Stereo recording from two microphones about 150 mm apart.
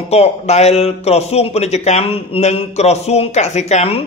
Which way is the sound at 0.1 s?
45° left (ahead or behind).